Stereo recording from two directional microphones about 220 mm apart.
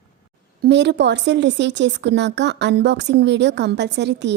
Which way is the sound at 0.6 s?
50° right (ahead or behind).